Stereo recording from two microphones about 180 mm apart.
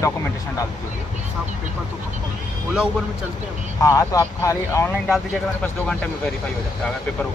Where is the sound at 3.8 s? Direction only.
20° left (ahead or behind).